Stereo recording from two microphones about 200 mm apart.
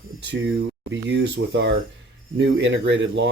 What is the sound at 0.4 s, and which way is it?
Speech, 65° right (ahead or behind).